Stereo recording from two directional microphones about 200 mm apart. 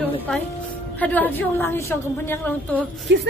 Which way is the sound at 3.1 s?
65° right (ahead or behind).